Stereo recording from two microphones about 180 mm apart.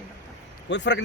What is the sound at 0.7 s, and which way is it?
Speech, 80° left.